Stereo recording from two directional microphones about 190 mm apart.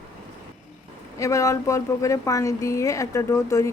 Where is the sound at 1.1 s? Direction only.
15° left (ahead or behind).